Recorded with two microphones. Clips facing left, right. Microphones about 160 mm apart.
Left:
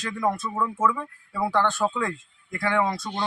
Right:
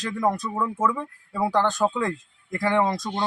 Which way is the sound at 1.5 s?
35° right (ahead or behind).